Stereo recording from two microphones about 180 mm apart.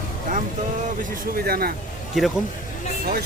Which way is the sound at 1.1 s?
55° right (ahead or behind).